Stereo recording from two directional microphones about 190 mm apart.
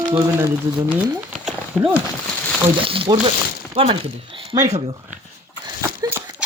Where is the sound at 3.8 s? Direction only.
30° right (ahead or behind).